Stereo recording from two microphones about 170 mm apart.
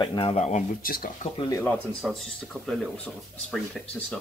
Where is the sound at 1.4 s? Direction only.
20° left (ahead or behind).